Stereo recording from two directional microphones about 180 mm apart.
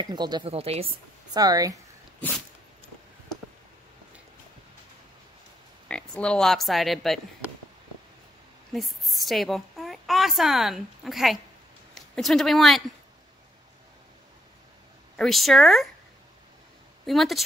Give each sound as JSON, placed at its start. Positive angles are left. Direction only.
{"t": 0.0, "sound": "speech", "side_deg": -25}
{"t": 1.3, "sound": "speech", "side_deg": -20}
{"t": 2.1, "sound": "a sound", "side_deg": 10}
{"t": 5.9, "sound": "speech", "side_deg": 5}
{"t": 8.7, "sound": "a woman's voice", "side_deg": 0}
{"t": 15.1, "sound": "speech", "side_deg": 0}
{"t": 17.0, "sound": "speech", "side_deg": 0}